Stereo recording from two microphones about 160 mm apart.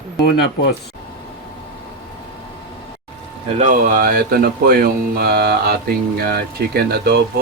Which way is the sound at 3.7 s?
60° right (ahead or behind).